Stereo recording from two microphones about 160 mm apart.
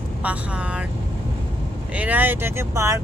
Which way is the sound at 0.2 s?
10° right (ahead or behind).